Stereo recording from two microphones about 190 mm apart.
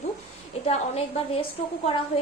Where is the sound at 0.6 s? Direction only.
30° left (ahead or behind).